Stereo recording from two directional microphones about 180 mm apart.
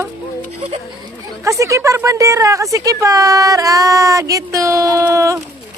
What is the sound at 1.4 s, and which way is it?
A woman's voice, 15° right (ahead or behind).